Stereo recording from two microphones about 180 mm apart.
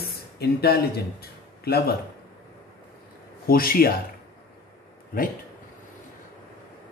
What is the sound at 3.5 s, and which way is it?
Speech, 55° left (ahead or behind).